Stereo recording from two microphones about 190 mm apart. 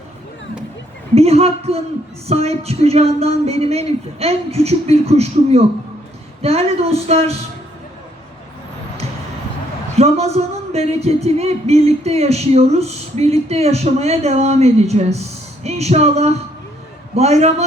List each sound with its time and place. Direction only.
1.1 s speech: 35° right (ahead or behind)
9.9 s speech: 35° right (ahead or behind)